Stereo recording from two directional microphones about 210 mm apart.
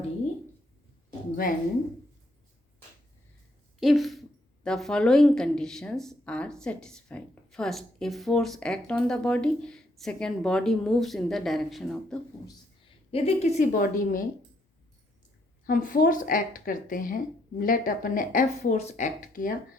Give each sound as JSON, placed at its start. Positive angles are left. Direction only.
{"t": 3.8, "sound": "a woman's voice", "side_deg": 0}
{"t": 13.1, "sound": "a woman's voice", "side_deg": 30}
{"t": 15.6, "sound": "a woman's voice", "side_deg": 40}